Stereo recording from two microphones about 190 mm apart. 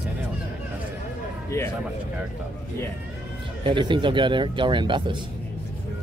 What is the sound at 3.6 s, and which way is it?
Speech, 25° right (ahead or behind).